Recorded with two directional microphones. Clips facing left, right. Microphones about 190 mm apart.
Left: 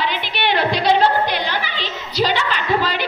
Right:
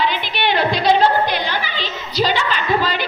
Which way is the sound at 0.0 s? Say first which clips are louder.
Right 2 dB; 65° left (ahead or behind).